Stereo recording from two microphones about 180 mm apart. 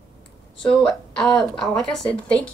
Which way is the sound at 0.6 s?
5° left (ahead or behind).